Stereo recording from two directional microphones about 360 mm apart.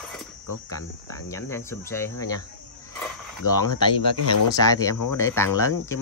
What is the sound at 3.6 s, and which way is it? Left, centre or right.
Speech, left.